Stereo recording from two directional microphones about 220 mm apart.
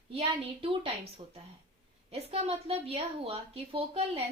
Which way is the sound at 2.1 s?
25° right (ahead or behind).